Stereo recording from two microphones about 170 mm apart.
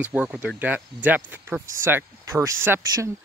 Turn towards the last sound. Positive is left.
turn(degrees=-15)  # may be behind; listen again after turning